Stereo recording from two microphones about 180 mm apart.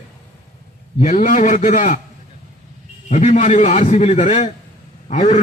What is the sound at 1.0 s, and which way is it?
Speech, 45° left (ahead or behind).